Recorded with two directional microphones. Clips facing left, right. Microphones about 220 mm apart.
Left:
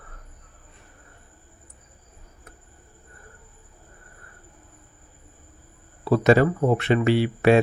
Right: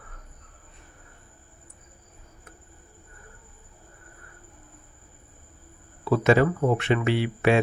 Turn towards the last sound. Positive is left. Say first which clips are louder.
# left 4 dB
turn(degrees=40)  # may be behind; listen again after turning